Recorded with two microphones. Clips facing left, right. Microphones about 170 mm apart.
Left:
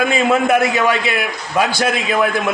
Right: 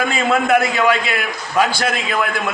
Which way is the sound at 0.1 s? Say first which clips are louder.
Left 2 dB; 20° left (ahead or behind).